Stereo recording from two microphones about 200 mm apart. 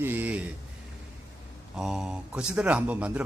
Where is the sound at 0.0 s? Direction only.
10° right (ahead or behind).